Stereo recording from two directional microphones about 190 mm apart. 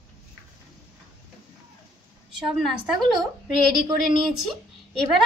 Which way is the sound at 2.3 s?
5° right (ahead or behind).